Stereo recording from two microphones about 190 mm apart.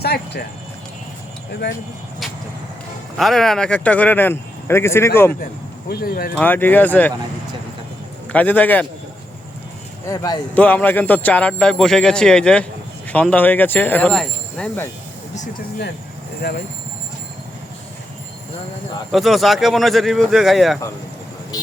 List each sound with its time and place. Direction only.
0.0 s a sound: 55° left (ahead or behind)
3.2 s speech: centre (ahead or behind)
5.9 s speech: 50° left (ahead or behind)
6.3 s speech: 10° left (ahead or behind)
8.3 s speech: 10° left (ahead or behind)
10.1 s speech: 20° left (ahead or behind)
10.5 s speech: 10° left (ahead or behind)
16.4 s speech: 60° left (ahead or behind)
19.1 s speech: centre (ahead or behind)